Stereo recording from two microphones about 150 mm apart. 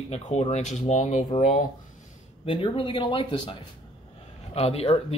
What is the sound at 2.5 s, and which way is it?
Speech, 35° left (ahead or behind).